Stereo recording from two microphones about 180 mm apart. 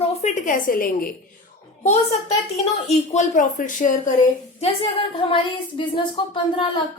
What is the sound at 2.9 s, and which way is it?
A woman's voice, 40° left (ahead or behind).